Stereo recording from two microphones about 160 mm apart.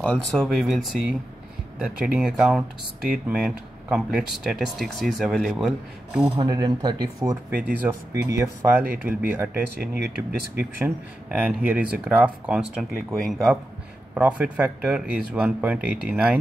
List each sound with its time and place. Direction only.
0.0 s speech: 5° left (ahead or behind)
6.3 s speech: 25° right (ahead or behind)
7.5 s speech: 10° right (ahead or behind)
9.8 s speech: 90° right
10.8 s speech: 10° right (ahead or behind)